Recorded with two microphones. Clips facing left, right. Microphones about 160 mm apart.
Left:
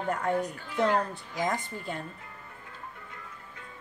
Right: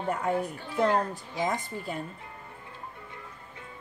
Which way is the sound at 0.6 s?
25° right (ahead or behind).